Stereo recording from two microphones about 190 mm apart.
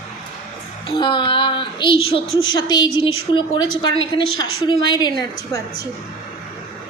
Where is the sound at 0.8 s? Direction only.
25° left (ahead or behind).